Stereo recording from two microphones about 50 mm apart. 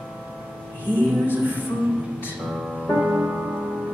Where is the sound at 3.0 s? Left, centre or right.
Right.